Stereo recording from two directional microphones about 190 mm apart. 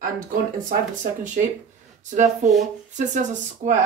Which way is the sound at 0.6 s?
40° right (ahead or behind).